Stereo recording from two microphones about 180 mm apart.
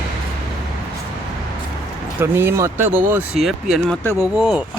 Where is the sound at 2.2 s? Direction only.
15° right (ahead or behind).